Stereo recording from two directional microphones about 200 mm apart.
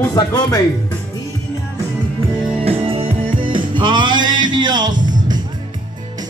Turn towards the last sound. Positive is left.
turn(degrees=-20)  # may be behind; listen again after turning